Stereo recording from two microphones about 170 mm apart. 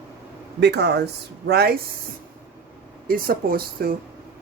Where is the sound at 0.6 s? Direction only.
80° right.